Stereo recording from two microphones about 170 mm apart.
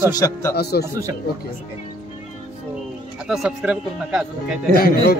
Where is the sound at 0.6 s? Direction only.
70° left (ahead or behind).